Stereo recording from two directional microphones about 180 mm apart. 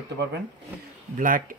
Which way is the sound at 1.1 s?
50° right (ahead or behind).